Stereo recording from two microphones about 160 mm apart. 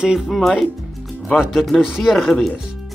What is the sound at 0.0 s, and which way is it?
Speech, 5° right (ahead or behind).